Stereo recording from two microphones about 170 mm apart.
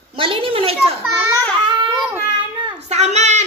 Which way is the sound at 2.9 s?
40° right (ahead or behind).